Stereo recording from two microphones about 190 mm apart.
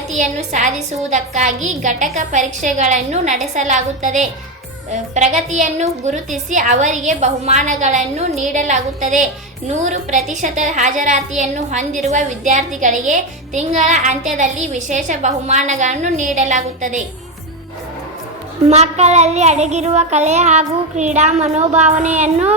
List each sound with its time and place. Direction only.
0.1 s a woman's voice: 40° right (ahead or behind)
18.7 s a woman's voice: 35° right (ahead or behind)